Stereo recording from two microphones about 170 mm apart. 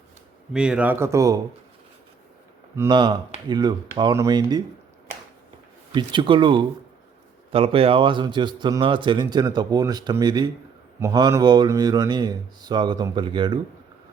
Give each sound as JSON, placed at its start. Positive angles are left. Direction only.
{"t": 0.5, "sound": "speech", "side_deg": -5}
{"t": 2.7, "sound": "a man's voice", "side_deg": -20}
{"t": 5.9, "sound": "a man's voice", "side_deg": -25}